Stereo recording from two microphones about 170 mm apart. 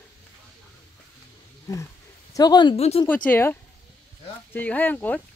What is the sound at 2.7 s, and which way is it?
Speech, 35° left (ahead or behind).